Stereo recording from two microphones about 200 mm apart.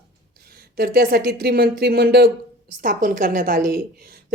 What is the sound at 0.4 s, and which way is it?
A woman's voice, 50° right (ahead or behind).